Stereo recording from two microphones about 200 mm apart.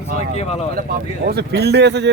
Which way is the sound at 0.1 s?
35° left (ahead or behind).